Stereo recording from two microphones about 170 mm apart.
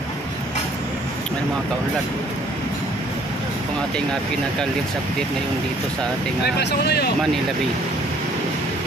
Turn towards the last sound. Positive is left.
turn(degrees=75)  # may be behind; listen again after turning